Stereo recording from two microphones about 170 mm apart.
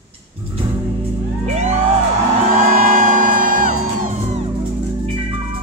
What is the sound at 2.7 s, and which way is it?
Music, 55° right (ahead or behind).